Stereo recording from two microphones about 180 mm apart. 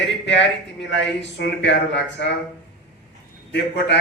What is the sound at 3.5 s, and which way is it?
Speech, 75° left (ahead or behind).